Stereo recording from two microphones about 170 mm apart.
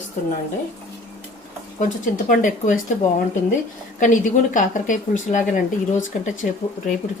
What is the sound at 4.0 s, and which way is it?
Speech, 50° left (ahead or behind).